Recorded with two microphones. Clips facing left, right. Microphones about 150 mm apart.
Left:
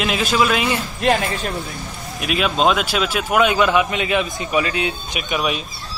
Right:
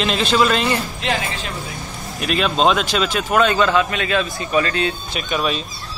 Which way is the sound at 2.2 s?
5° left (ahead or behind).